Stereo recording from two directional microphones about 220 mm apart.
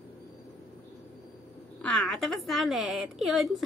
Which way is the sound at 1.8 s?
Centre (ahead or behind).